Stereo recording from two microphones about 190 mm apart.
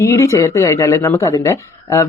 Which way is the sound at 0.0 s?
15° left (ahead or behind).